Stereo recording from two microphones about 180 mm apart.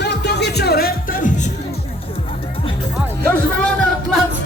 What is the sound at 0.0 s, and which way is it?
Music, 70° left (ahead or behind).